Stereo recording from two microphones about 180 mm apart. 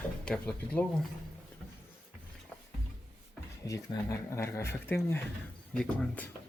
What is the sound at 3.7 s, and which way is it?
Speech, 20° left (ahead or behind).